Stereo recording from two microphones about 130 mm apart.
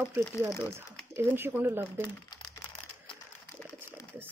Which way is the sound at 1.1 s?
15° right (ahead or behind).